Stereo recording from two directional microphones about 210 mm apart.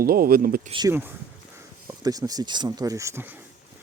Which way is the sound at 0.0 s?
45° right (ahead or behind).